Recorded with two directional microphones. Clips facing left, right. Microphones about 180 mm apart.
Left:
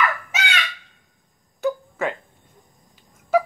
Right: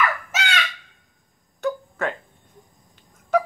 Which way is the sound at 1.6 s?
5° left (ahead or behind).